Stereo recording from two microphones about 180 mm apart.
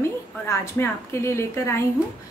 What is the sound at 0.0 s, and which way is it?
A woman's voice, 15° left (ahead or behind).